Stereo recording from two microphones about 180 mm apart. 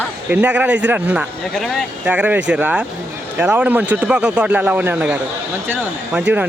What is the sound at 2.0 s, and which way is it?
Speech, 10° right (ahead or behind).